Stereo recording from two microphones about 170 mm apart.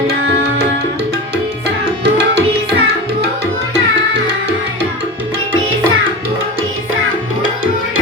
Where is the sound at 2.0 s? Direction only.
85° right.